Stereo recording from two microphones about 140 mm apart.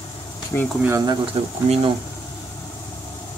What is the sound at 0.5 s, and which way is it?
Speech, 15° left (ahead or behind).